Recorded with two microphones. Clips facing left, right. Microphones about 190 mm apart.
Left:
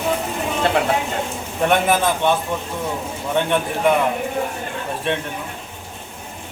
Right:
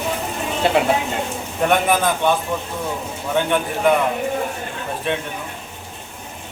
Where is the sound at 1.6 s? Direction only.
Centre (ahead or behind).